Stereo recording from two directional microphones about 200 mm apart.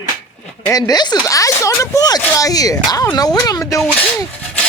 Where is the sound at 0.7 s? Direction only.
20° left (ahead or behind).